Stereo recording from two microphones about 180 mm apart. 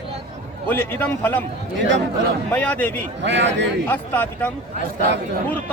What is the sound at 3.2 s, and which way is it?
Speech, 80° right.